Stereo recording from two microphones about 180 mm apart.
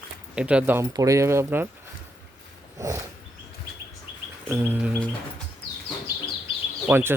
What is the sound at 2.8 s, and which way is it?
Speech, 15° right (ahead or behind).